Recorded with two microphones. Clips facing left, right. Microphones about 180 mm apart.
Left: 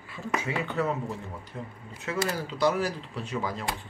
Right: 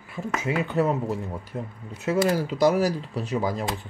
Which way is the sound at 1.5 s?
45° right (ahead or behind).